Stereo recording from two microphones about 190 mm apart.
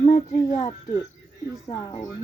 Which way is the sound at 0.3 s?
15° left (ahead or behind).